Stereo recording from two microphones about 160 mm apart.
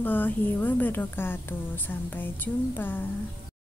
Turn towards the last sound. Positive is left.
turn(degrees=10)  # may be behind; listen again after turning